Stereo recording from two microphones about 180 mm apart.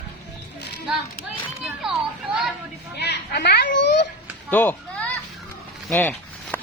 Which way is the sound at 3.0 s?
70° left (ahead or behind).